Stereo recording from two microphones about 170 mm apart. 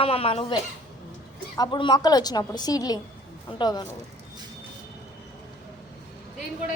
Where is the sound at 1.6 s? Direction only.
25° left (ahead or behind).